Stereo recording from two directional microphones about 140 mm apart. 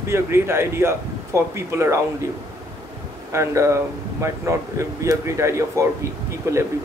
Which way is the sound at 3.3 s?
20° right (ahead or behind).